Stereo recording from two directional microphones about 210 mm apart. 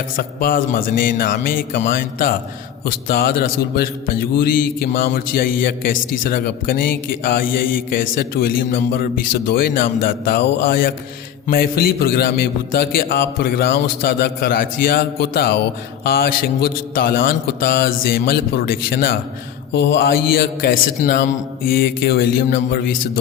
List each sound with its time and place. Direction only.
0.2 s a man's voice: 45° left (ahead or behind)